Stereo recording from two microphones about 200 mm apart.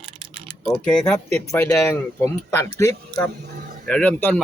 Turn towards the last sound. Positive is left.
turn(degrees=10)  # may be behind; listen again after turning